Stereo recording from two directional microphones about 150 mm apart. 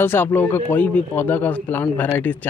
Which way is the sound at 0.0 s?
15° left (ahead or behind).